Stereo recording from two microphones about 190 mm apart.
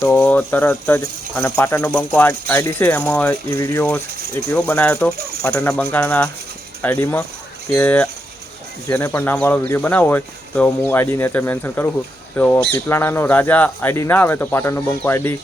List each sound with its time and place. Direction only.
0.0 s speech: 10° left (ahead or behind)
5.1 s speech: 55° right (ahead or behind)
5.9 s speech: 5° left (ahead or behind)